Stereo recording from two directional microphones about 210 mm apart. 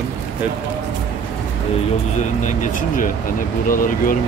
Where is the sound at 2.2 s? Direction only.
35° left (ahead or behind).